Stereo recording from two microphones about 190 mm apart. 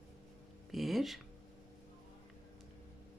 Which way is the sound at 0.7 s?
Centre (ahead or behind).